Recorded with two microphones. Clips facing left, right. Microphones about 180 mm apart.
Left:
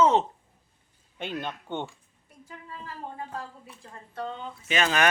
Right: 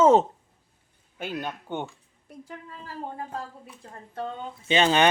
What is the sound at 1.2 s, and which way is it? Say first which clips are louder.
Speech: right 1 dB; 5° right (ahead or behind).